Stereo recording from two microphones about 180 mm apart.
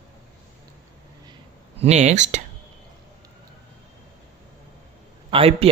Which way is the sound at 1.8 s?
35° right (ahead or behind).